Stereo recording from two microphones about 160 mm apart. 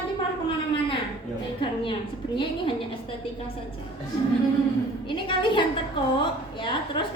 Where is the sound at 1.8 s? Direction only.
30° left (ahead or behind).